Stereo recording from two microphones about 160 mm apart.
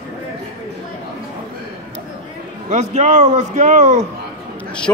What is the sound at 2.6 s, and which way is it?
A man's voice, 45° right (ahead or behind).